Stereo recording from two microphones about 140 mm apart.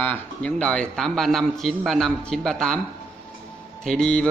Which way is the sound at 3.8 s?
5° left (ahead or behind).